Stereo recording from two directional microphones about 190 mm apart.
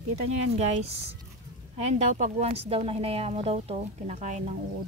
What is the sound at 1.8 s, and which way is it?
A woman's voice, 40° right (ahead or behind).